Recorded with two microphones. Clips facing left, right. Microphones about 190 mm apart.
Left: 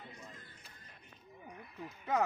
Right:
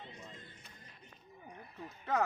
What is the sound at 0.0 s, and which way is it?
Music, 25° right (ahead or behind).